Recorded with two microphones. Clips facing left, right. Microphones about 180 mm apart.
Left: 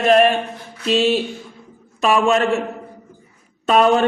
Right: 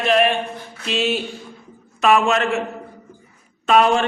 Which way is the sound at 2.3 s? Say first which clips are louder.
Left 3 dB; 35° left (ahead or behind).